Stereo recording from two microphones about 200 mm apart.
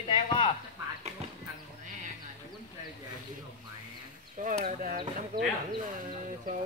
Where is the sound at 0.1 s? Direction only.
25° left (ahead or behind).